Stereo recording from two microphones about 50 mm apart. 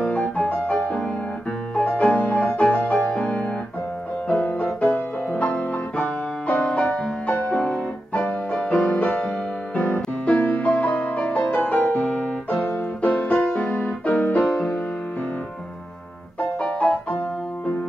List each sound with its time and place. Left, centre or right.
0.0 s music: left
4.8 s music: left
7.5 s music: centre
8.1 s music: left